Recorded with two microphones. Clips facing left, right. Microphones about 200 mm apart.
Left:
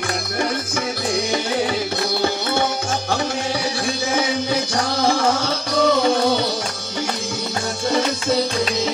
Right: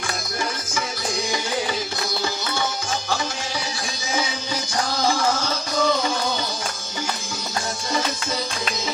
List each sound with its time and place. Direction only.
4.1 s music: 60° left (ahead or behind)